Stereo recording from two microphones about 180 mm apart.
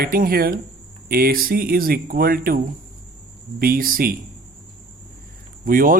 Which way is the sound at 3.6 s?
55° right (ahead or behind).